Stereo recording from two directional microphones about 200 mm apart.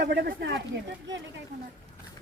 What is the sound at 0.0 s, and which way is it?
Speech, 55° right (ahead or behind).